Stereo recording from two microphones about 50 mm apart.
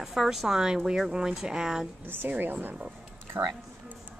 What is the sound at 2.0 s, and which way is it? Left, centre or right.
Speech, right.